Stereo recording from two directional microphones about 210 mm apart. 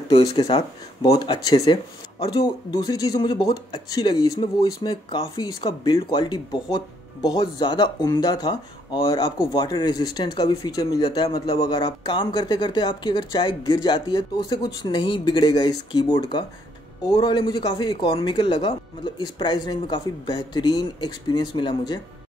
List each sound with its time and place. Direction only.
0.1 s speech: 20° left (ahead or behind)